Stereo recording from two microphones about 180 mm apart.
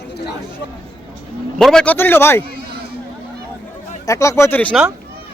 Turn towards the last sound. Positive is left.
turn(degrees=10)  # may be behind; listen again after turning